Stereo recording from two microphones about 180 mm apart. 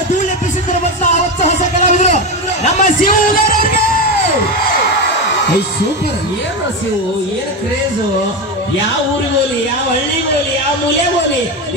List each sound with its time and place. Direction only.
0.7 s music: 40° left (ahead or behind)